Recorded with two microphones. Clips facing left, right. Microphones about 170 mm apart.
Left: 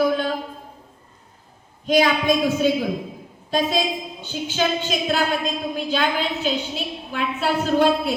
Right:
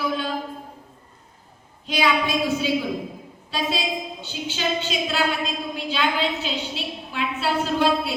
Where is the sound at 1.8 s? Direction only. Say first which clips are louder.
Left 5 dB; 45° left (ahead or behind).